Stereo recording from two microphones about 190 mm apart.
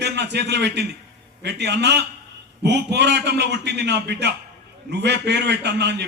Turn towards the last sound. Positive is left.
turn(degrees=-60)  # may be behind; listen again after turning